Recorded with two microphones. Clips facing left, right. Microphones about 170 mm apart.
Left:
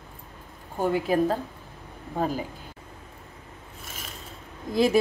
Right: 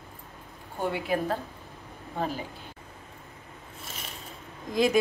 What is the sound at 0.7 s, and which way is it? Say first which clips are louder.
Speech: left 5 dB; 40° left (ahead or behind).